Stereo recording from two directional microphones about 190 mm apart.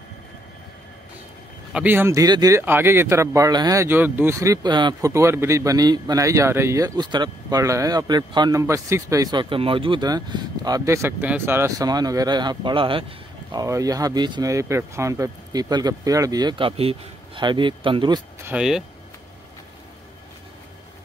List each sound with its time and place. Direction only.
1.7 s speech: 10° right (ahead or behind); by 18.2 s 25° right (ahead or behind)
18.4 s speech: 5° right (ahead or behind)